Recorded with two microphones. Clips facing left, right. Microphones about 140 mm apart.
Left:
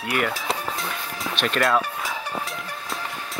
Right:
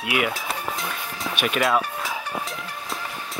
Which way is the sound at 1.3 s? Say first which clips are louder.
Even; 5° right (ahead or behind).